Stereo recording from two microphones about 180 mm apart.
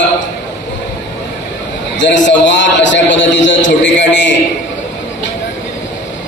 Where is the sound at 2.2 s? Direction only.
85° left.